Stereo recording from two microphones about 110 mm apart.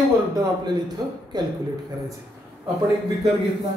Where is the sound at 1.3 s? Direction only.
40° right (ahead or behind).